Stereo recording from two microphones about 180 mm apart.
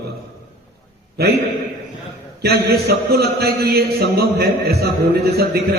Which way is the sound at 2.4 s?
60° right (ahead or behind).